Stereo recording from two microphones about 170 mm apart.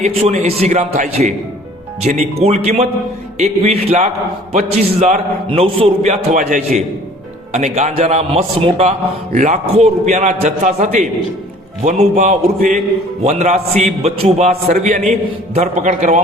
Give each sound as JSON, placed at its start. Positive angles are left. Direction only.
{"t": 0.0, "sound": "a man's voice", "side_deg": -40}
{"t": 13.2, "sound": "a man's voice", "side_deg": -40}